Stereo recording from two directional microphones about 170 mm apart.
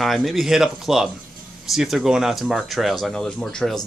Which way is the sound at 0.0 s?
Centre (ahead or behind).